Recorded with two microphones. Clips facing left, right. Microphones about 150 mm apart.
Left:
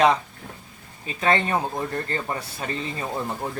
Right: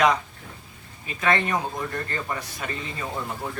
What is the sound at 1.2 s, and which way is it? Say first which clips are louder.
Speech: left 2 dB; 30° left (ahead or behind).